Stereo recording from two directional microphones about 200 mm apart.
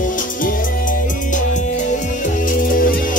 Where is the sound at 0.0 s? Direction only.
40° left (ahead or behind).